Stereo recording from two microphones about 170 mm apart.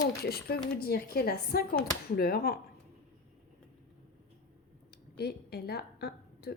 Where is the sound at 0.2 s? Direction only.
70° left (ahead or behind).